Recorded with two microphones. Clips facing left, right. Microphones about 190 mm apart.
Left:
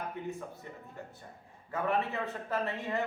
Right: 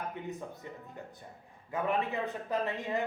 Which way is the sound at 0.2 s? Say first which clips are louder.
Left 2 dB; 20° right (ahead or behind).